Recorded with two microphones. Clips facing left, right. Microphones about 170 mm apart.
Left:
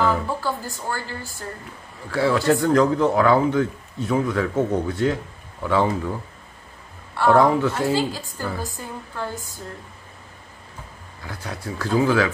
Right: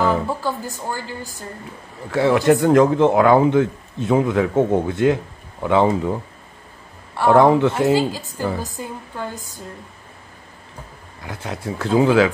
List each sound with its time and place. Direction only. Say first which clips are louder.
0.0 s a woman's voice: right 2 dB; 20° right (ahead or behind)
7.2 s a woman's voice: right 3 dB; 15° right (ahead or behind)
11.2 s speech: right 4 dB; 20° right (ahead or behind)